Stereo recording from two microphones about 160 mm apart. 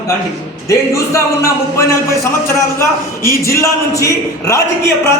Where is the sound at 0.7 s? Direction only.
20° left (ahead or behind).